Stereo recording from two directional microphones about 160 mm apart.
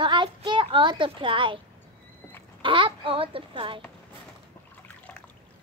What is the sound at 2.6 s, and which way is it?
A child's voice, 30° right (ahead or behind).